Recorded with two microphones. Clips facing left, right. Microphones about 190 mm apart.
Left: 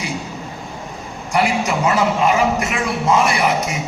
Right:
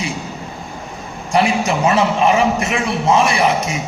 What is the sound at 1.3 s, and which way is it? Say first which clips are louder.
A man's voice: right 2 dB; 25° right (ahead or behind).